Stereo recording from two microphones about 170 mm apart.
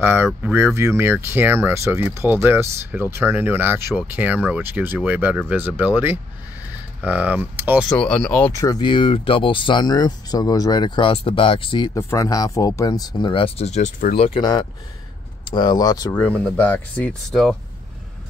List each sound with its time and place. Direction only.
0.0 s speech: 10° right (ahead or behind)
7.9 s speech: 5° left (ahead or behind)
8.5 s speech: 20° left (ahead or behind); by 14.2 s 45° left (ahead or behind)
14.2 s speech: 30° left (ahead or behind); by 17.6 s 5° left (ahead or behind)